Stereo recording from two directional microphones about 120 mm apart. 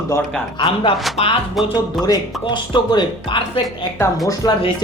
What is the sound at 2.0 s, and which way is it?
Speech, 35° left (ahead or behind).